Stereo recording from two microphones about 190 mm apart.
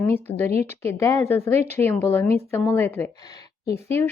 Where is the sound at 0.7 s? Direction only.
15° left (ahead or behind).